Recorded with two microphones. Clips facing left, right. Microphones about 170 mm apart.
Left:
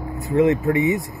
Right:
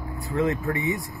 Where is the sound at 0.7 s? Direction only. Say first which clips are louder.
Left 8 dB; 20° left (ahead or behind).